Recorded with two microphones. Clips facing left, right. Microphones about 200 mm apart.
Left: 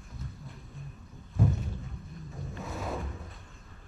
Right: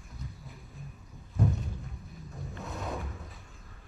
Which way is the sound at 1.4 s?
Centre (ahead or behind).